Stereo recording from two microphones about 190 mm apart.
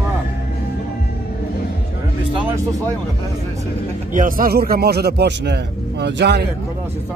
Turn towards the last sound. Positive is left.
turn(degrees=-60)  # may be behind; listen again after turning